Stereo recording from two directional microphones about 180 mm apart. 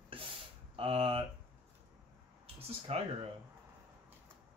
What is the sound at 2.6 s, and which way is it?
Speech, 35° right (ahead or behind).